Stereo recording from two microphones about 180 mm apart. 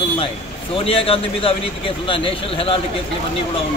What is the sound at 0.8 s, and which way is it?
Speech, 30° left (ahead or behind).